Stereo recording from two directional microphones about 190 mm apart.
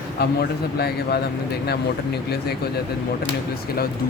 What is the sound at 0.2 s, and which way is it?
Speech, 55° left (ahead or behind).